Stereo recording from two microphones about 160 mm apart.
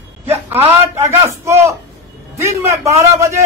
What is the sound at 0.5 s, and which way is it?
A man's voice, 15° right (ahead or behind).